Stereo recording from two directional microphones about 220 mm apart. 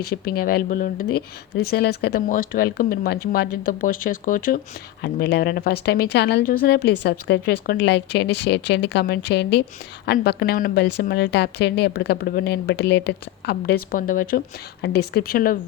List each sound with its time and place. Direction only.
0.0 s a woman's voice: 45° left (ahead or behind)